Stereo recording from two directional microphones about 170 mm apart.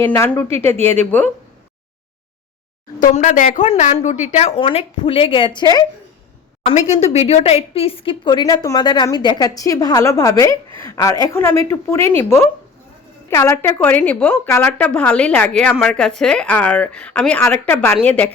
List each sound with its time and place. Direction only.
0.1 s a woman's voice: 15° left (ahead or behind)
3.0 s a woman's voice: 45° left (ahead or behind); by 5.8 s 25° left (ahead or behind)
6.7 s a woman's voice: 40° left (ahead or behind); by 18.3 s 10° left (ahead or behind)